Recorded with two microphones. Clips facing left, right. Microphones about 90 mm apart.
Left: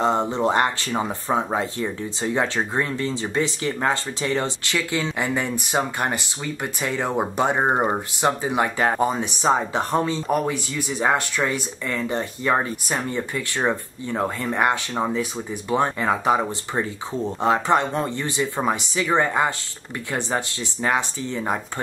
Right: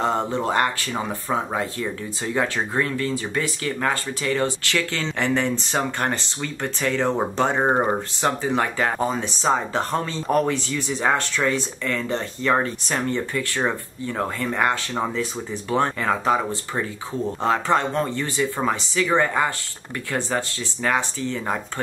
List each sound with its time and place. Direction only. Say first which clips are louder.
0.0 s speech: left 2 dB; 20° left (ahead or behind)